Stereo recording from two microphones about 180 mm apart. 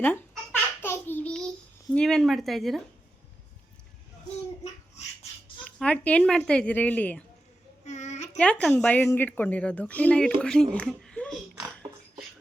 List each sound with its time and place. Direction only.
0.0 s babbling: 10° left (ahead or behind)
1.9 s speech: 5° left (ahead or behind)
5.6 s a woman's voice: 5° left (ahead or behind)
7.9 s a sound: 40° left (ahead or behind)
8.4 s a woman's voice: 5° left (ahead or behind)
10.8 s a sound: 5° left (ahead or behind)